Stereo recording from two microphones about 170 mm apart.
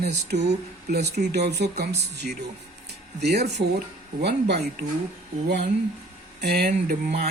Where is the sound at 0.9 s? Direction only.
80° right.